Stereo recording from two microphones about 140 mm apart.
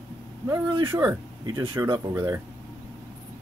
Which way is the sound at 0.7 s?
35° right (ahead or behind).